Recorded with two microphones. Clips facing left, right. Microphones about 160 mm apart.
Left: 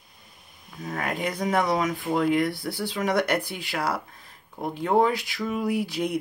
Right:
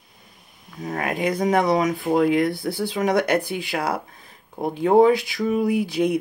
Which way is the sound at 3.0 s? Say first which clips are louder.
Right 4 dB; 15° right (ahead or behind).